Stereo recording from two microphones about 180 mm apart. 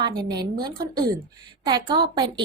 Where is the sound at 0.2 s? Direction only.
25° right (ahead or behind).